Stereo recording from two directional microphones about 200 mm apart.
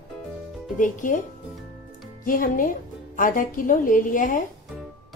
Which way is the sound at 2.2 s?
45° left (ahead or behind).